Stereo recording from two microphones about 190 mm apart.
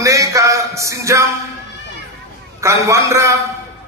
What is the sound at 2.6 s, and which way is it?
Speech, 15° right (ahead or behind).